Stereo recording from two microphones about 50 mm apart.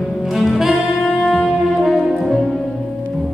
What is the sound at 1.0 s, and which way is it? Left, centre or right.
Music, centre.